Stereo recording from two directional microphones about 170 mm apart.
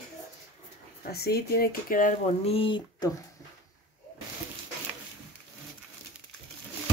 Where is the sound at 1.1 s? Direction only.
65° left (ahead or behind).